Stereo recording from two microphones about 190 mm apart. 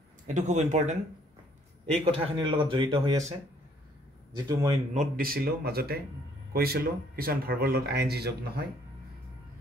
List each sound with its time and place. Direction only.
0.3 s speech: 40° right (ahead or behind)
4.4 s speech: 20° right (ahead or behind)
4.9 s speech: 50° right (ahead or behind)